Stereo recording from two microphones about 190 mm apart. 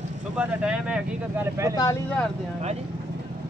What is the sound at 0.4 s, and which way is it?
Speech, 5° right (ahead or behind).